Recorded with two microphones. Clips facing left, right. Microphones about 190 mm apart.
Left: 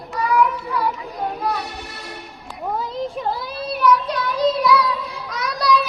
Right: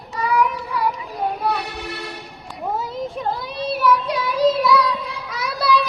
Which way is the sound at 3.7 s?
5° right (ahead or behind).